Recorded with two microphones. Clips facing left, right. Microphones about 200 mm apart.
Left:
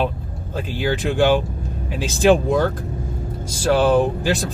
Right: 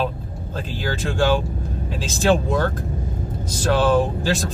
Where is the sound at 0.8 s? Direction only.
15° left (ahead or behind).